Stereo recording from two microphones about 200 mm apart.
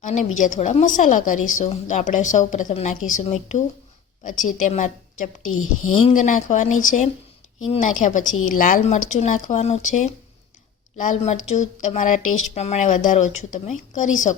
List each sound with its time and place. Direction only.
0.0 s a woman's voice: 40° left (ahead or behind)
5.5 s a woman's voice: 90° left
6.0 s a woman's voice: 35° left (ahead or behind)